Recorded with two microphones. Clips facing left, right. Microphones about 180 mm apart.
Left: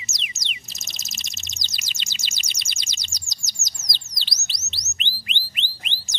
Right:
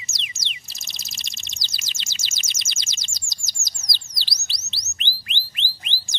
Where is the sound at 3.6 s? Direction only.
20° left (ahead or behind).